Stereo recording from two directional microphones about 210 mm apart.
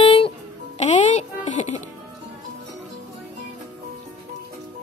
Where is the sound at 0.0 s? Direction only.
25° left (ahead or behind).